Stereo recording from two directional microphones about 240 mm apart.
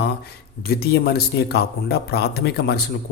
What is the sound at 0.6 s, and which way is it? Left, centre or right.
Speech, left.